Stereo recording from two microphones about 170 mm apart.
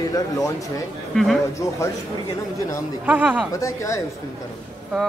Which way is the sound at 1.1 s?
5° left (ahead or behind).